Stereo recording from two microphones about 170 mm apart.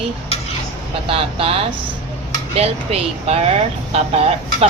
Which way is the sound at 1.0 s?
35° right (ahead or behind).